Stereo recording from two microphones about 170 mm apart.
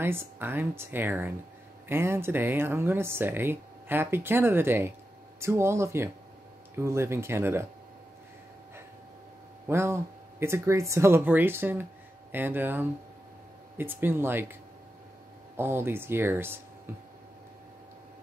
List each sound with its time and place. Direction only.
0.0 s speech: 15° right (ahead or behind)
9.7 s speech: 15° right (ahead or behind)
15.5 s speech: 15° right (ahead or behind)